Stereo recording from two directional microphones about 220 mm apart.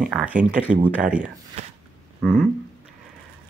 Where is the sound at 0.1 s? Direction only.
5° right (ahead or behind).